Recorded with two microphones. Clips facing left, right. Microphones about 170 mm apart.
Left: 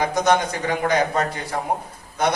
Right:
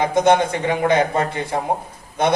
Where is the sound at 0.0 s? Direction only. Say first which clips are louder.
Right 4 dB; 25° right (ahead or behind).